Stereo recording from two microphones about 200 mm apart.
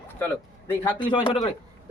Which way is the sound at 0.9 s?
25° left (ahead or behind).